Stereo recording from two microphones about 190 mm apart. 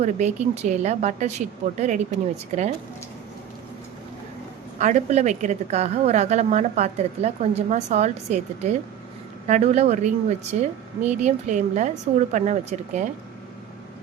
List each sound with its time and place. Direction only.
0.0 s a woman's voice: 35° right (ahead or behind)
4.8 s a woman's voice: 40° right (ahead or behind)